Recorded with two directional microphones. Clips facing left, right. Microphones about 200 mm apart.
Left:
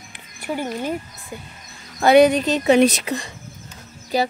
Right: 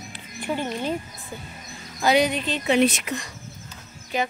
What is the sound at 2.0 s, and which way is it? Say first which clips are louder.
Speech: left 8 dB; 55° left (ahead or behind).